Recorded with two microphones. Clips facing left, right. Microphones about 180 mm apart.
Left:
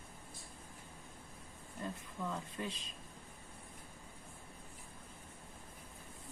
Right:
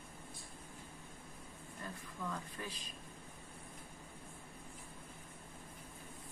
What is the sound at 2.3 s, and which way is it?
Speech, 25° left (ahead or behind).